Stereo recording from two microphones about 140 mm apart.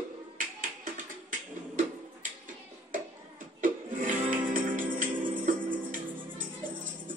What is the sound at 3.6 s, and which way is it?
Music, 65° right (ahead or behind).